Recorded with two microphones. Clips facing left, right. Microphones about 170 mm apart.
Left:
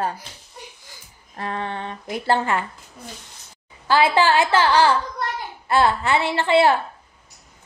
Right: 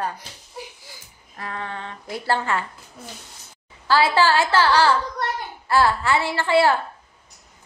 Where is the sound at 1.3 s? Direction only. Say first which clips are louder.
Left 4 dB; 25° left (ahead or behind).